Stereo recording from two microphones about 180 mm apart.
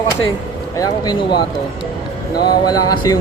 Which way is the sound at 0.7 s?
20° left (ahead or behind).